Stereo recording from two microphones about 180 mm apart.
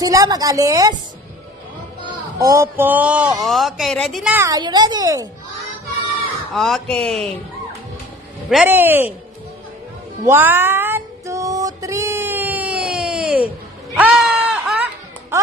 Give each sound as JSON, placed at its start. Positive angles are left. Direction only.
{"t": 0.0, "sound": "a woman's voice", "side_deg": -20}
{"t": 2.0, "sound": "speech", "side_deg": -20}
{"t": 4.5, "sound": "a woman's voice", "side_deg": -25}
{"t": 6.5, "sound": "speech", "side_deg": 0}
{"t": 8.5, "sound": "speech", "side_deg": -5}
{"t": 10.2, "sound": "cat", "side_deg": -10}
{"t": 13.9, "sound": "a sound", "side_deg": -10}